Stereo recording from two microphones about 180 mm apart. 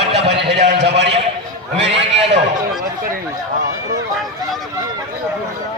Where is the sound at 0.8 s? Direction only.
70° right (ahead or behind).